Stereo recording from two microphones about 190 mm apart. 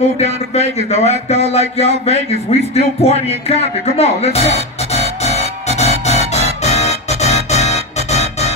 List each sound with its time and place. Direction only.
0.2 s speech: 35° left (ahead or behind)
2.7 s music: 30° left (ahead or behind)